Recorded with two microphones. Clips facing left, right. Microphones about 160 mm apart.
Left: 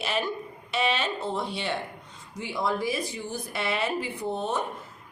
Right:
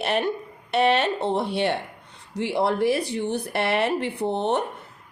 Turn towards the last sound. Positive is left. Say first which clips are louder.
# right 6 dB
turn(degrees=-65)  # may be behind; listen again after turning